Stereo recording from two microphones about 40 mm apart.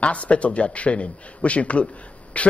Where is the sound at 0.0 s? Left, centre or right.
Left.